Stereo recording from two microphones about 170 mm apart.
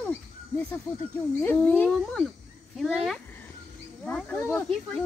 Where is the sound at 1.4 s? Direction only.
10° left (ahead or behind).